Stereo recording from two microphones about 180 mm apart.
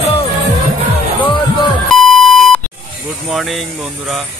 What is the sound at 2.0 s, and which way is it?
Beep, 5° left (ahead or behind).